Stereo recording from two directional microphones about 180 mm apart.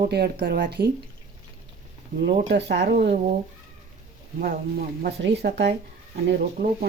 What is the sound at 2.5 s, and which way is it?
Speech, 70° right (ahead or behind).